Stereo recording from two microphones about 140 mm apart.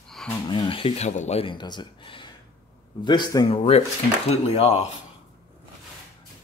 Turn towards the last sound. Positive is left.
turn(degrees=50)  # may be behind; listen again after turning